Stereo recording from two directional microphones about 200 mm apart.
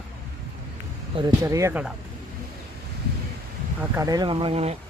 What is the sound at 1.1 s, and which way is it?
Speech, 20° right (ahead or behind).